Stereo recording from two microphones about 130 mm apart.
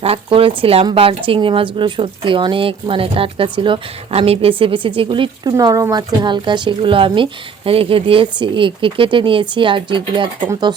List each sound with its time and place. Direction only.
0.0 s speech: 45° right (ahead or behind)